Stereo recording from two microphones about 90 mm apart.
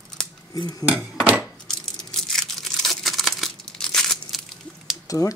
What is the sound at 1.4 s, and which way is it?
Tearing, 5° left (ahead or behind).